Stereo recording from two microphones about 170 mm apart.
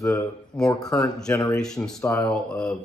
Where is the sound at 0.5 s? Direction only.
5° left (ahead or behind).